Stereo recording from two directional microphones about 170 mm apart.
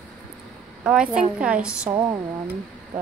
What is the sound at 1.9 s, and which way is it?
Speech, 20° right (ahead or behind).